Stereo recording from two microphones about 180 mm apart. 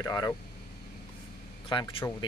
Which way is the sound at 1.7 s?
30° left (ahead or behind).